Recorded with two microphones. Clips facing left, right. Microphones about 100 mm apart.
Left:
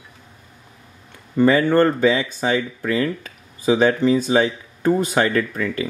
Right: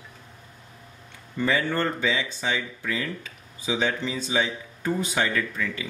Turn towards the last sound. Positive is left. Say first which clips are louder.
# left 7 dB
turn(degrees=50)  # may be behind; listen again after turning